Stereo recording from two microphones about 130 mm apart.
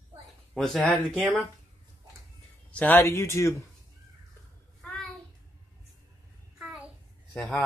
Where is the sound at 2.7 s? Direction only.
15° left (ahead or behind).